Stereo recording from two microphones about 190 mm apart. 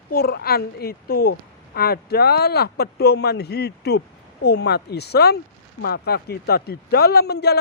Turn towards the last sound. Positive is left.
turn(degrees=60)  # may be behind; listen again after turning